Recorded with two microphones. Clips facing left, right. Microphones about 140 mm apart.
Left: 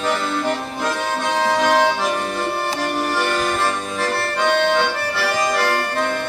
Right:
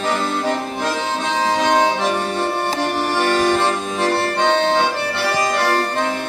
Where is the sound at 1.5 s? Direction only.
20° right (ahead or behind).